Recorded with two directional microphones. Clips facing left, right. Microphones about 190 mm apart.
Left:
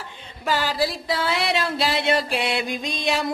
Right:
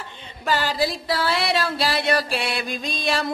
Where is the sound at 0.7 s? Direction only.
15° left (ahead or behind).